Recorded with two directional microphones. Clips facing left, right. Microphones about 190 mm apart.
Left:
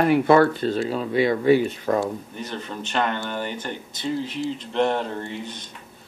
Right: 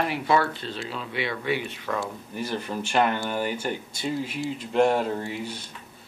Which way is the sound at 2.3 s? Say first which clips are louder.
Right 2 dB; 10° right (ahead or behind).